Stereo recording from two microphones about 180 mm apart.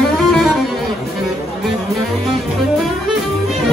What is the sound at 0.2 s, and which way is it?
Music, centre (ahead or behind).